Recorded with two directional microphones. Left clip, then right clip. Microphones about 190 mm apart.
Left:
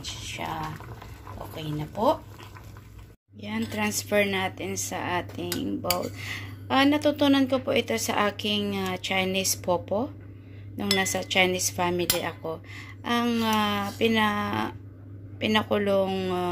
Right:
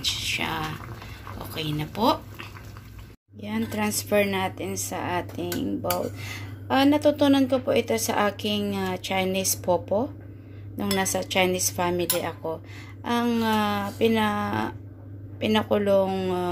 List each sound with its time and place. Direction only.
0.0 s a sound: 5° left (ahead or behind)
1.5 s speech: 5° left (ahead or behind)
3.3 s speech: centre (ahead or behind)